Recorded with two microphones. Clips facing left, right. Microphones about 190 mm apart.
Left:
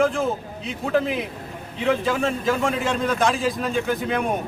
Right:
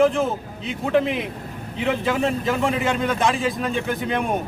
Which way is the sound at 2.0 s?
Centre (ahead or behind).